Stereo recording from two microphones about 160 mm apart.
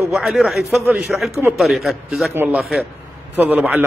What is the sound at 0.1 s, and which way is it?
A man's voice, centre (ahead or behind).